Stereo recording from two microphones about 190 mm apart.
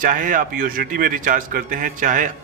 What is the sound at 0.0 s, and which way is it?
A man's voice, 45° right (ahead or behind).